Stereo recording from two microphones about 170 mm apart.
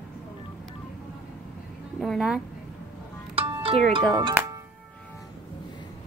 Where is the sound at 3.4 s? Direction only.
35° right (ahead or behind).